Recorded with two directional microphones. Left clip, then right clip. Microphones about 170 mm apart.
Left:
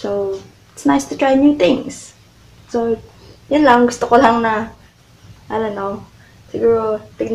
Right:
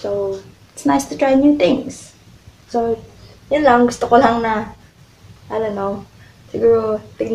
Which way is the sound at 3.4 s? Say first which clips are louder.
Left 1 dB; 15° left (ahead or behind).